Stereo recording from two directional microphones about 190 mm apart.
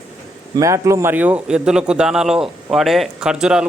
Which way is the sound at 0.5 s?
15° right (ahead or behind).